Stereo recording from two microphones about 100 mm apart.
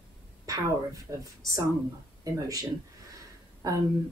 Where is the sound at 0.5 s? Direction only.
35° right (ahead or behind).